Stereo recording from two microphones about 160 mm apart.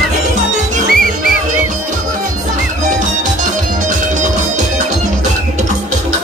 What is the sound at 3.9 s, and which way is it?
Music, 50° right (ahead or behind).